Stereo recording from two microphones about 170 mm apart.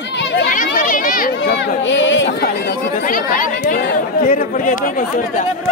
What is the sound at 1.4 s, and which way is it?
Speech, 90° left.